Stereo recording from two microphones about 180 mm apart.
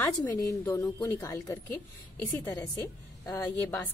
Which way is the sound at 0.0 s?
20° left (ahead or behind).